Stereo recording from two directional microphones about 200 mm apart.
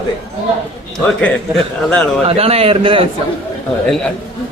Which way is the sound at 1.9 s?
5° left (ahead or behind).